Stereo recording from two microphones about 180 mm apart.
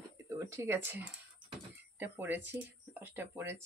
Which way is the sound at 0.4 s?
15° right (ahead or behind).